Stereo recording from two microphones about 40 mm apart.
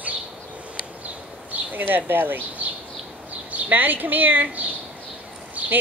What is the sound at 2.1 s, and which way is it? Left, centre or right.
Speech, right.